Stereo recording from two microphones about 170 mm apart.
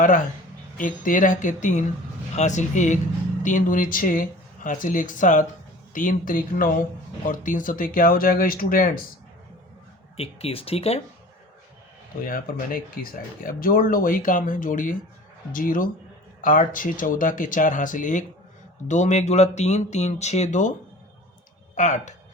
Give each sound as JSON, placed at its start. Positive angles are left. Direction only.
{"t": 0.8, "sound": "speech", "side_deg": 50}
{"t": 10.2, "sound": "speech", "side_deg": 35}
{"t": 12.2, "sound": "speech", "side_deg": 55}
{"t": 21.8, "sound": "speech", "side_deg": 45}